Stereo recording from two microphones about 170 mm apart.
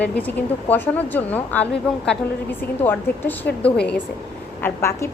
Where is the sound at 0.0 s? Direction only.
10° left (ahead or behind).